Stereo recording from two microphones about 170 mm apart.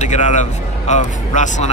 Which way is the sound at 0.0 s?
45° left (ahead or behind).